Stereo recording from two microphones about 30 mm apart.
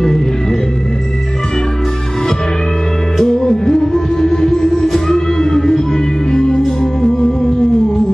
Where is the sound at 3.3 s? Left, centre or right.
Left.